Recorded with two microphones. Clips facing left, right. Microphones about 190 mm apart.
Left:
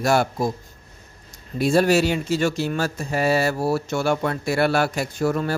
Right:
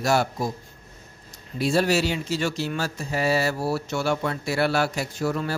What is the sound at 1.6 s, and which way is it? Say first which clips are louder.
Speech: left 4 dB; 50° left (ahead or behind).